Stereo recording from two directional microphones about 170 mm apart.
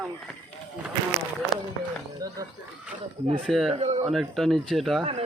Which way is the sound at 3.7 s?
40° right (ahead or behind).